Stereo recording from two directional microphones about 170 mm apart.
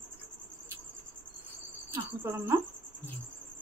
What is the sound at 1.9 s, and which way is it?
Speech, 15° right (ahead or behind).